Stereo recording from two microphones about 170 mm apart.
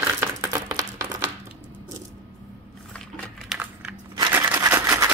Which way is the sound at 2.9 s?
5° left (ahead or behind).